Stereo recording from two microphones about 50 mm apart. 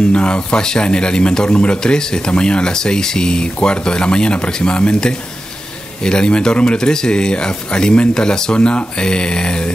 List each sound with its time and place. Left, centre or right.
0.1 s speech: centre